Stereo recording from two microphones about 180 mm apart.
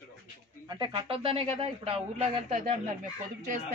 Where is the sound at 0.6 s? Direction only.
25° right (ahead or behind).